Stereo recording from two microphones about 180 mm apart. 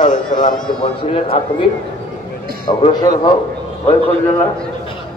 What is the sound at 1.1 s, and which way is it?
Speech, 30° left (ahead or behind).